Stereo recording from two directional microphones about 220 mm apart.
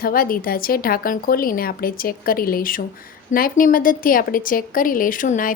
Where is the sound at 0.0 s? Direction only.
40° left (ahead or behind).